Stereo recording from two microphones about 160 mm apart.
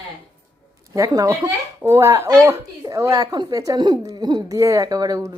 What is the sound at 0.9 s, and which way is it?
Speech, 20° right (ahead or behind).